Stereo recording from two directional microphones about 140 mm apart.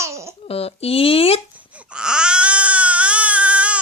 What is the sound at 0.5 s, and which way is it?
Speech, 45° left (ahead or behind).